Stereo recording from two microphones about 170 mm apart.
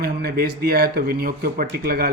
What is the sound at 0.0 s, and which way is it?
A man's voice, 65° right (ahead or behind).